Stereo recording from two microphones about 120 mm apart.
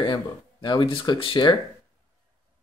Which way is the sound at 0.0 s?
40° left (ahead or behind).